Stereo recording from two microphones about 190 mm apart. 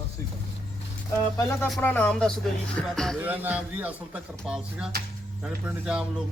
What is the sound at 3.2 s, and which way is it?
Speech, 10° right (ahead or behind).